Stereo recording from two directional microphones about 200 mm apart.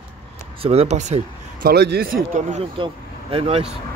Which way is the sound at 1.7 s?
55° right (ahead or behind).